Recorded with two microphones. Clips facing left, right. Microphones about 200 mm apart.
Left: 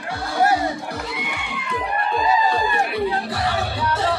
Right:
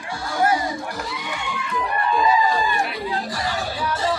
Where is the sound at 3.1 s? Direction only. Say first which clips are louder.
Left 3 dB; 60° left (ahead or behind).